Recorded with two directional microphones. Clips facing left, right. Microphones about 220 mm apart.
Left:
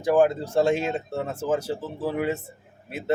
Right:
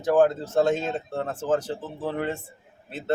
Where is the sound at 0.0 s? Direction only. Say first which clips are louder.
Even; 10° left (ahead or behind).